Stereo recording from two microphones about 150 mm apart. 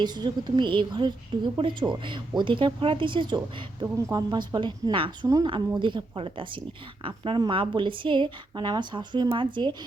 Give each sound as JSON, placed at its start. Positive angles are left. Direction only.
{"t": 0.0, "sound": "a woman's voice", "side_deg": -30}